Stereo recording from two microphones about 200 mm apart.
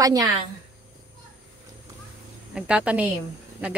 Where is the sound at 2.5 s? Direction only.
5° right (ahead or behind).